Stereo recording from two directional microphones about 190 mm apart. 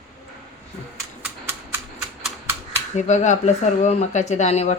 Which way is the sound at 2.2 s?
10° right (ahead or behind).